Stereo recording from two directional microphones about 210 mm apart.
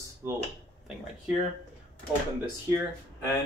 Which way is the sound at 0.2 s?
10° right (ahead or behind).